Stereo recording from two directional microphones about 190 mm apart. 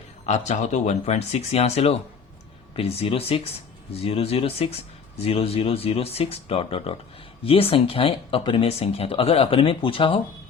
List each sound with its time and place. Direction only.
0.3 s speech: 35° left (ahead or behind)